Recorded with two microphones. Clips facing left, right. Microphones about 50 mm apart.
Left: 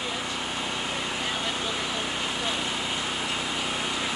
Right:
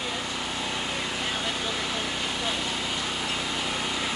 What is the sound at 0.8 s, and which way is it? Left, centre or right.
Vehicle, centre.